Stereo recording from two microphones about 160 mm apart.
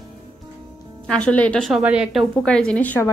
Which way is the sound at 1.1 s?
5° left (ahead or behind).